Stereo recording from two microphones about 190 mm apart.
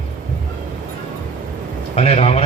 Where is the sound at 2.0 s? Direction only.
30° left (ahead or behind).